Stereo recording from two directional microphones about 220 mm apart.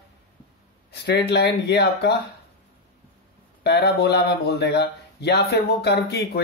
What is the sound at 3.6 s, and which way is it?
Speech, 50° left (ahead or behind).